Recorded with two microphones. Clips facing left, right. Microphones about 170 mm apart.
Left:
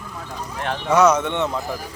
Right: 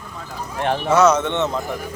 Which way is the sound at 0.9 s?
10° left (ahead or behind).